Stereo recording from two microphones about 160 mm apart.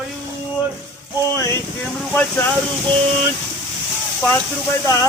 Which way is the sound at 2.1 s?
10° left (ahead or behind).